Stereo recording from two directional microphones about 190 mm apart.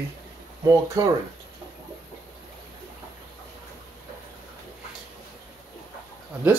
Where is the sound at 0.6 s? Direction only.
15° right (ahead or behind).